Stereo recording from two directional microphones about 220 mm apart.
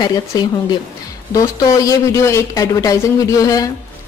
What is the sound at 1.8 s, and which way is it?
Speech, 15° left (ahead or behind).